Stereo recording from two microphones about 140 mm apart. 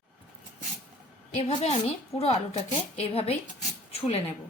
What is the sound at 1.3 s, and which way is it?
A woman's voice, 50° left (ahead or behind).